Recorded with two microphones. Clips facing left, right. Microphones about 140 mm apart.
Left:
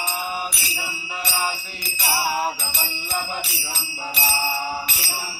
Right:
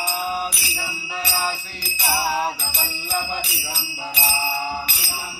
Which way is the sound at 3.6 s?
Centre (ahead or behind).